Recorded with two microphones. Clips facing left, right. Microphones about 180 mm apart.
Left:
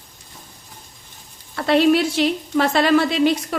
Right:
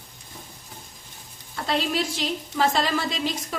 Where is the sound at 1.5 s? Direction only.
65° left (ahead or behind).